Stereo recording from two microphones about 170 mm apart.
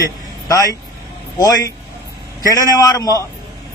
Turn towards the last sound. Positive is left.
turn(degrees=20)  # may be behind; listen again after turning